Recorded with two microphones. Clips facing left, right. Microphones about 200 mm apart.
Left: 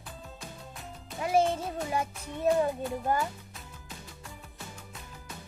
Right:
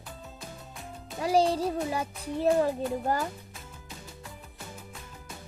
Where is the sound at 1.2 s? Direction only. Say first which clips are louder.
Right 2 dB; 35° right (ahead or behind).